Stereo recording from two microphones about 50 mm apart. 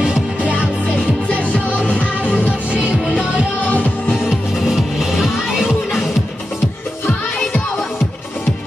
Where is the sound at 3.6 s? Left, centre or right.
Left.